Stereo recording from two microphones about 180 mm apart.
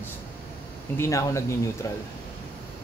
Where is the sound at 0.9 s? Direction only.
15° left (ahead or behind).